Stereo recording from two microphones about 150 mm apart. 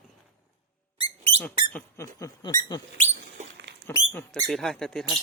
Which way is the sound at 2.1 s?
20° left (ahead or behind).